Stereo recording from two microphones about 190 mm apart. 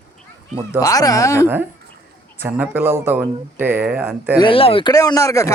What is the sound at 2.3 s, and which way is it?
Speech, 10° right (ahead or behind).